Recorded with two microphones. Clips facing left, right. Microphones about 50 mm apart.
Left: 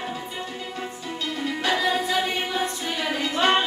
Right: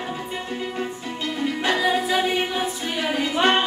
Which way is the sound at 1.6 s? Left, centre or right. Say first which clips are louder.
Right 2 dB; centre.